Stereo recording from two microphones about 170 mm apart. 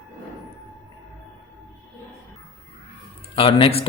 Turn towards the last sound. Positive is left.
turn(degrees=30)  # may be behind; listen again after turning